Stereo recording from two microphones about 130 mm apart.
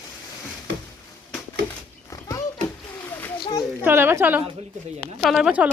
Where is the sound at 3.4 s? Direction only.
35° left (ahead or behind).